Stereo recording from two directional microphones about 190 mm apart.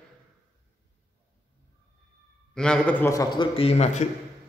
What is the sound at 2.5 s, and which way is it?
A man's voice, 5° left (ahead or behind).